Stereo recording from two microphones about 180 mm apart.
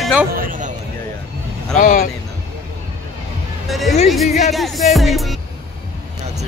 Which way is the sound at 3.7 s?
Centre (ahead or behind).